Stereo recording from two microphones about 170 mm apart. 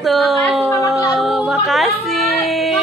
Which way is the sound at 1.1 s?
Centre (ahead or behind).